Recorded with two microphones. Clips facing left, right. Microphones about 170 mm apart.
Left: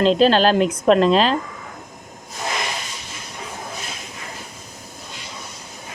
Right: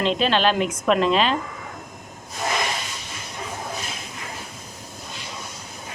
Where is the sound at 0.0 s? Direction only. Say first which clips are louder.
Left 6 dB; 35° left (ahead or behind).